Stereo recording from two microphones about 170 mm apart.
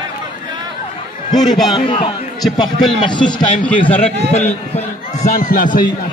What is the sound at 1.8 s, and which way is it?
A man's voice, 30° left (ahead or behind).